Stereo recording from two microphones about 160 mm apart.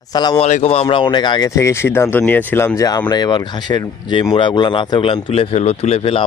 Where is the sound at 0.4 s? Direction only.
45° left (ahead or behind).